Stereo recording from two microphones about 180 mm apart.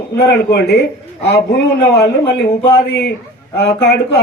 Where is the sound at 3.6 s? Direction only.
65° left (ahead or behind).